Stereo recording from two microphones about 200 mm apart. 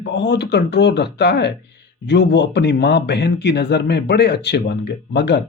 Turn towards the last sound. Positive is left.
turn(degrees=60)  # may be behind; listen again after turning